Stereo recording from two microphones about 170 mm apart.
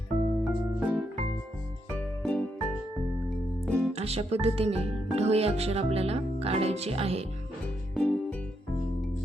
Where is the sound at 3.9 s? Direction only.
35° right (ahead or behind).